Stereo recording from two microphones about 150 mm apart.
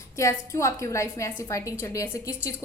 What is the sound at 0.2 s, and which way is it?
A woman's voice, 20° left (ahead or behind).